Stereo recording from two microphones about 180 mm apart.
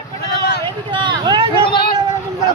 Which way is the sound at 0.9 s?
25° right (ahead or behind).